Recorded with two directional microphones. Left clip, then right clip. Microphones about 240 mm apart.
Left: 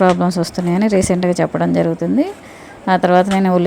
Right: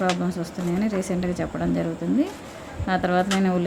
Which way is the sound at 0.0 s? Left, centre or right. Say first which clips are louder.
Left 11 dB; left.